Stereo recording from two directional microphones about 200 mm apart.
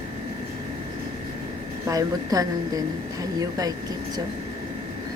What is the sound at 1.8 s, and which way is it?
A woman's voice, 15° right (ahead or behind).